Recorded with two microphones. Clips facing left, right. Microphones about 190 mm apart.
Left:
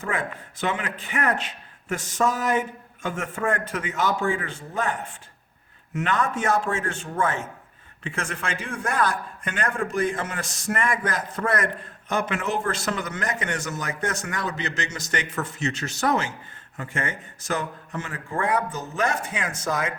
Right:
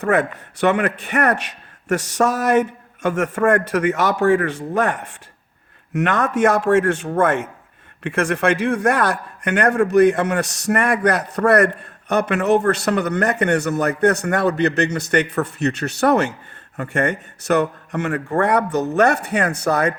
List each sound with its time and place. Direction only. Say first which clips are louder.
0.0 s a man's voice: right 10 dB; 70° right (ahead or behind)